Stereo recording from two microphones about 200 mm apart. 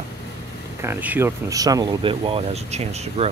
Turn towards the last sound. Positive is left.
turn(degrees=-35)  # may be behind; listen again after turning